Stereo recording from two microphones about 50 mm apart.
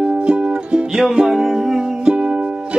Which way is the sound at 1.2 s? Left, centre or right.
Centre.